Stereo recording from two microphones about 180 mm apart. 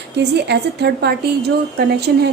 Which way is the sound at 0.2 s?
70° right (ahead or behind).